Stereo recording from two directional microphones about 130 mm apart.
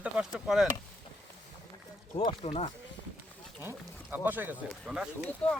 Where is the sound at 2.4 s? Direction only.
50° left (ahead or behind).